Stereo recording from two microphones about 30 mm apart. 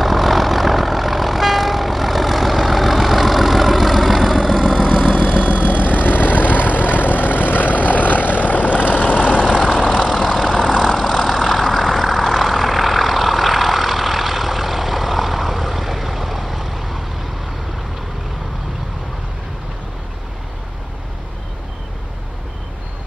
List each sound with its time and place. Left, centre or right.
0.0 s vehicle: centre
4.9 s vehicle: right
5.6 s vehicle: left
6.0 s vehicle: left
10.6 s vehicle: centre
10.9 s vehicle: centre